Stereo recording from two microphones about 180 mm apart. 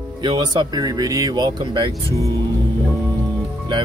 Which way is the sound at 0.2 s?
25° right (ahead or behind).